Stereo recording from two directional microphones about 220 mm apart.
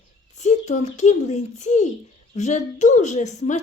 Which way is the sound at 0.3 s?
30° left (ahead or behind).